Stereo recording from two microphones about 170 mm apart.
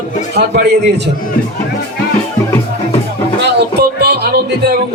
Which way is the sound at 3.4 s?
75° right (ahead or behind).